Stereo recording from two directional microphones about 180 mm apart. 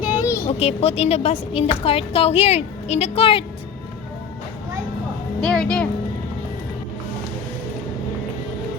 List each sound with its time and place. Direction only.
0.0 s a sound: 10° right (ahead or behind)
0.6 s a woman's voice: 35° left (ahead or behind)
5.4 s speech: centre (ahead or behind)